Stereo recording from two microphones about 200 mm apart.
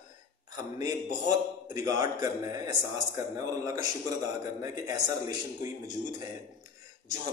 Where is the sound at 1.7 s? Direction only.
20° right (ahead or behind).